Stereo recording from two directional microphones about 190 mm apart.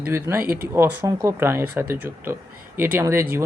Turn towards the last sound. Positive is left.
turn(degrees=-15)  # may be behind; listen again after turning